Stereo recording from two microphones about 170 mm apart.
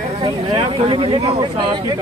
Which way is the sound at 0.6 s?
30° right (ahead or behind).